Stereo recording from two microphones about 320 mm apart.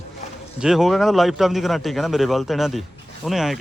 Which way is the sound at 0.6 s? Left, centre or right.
Centre.